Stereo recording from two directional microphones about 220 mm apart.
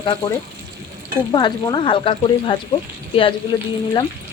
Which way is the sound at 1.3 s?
20° left (ahead or behind).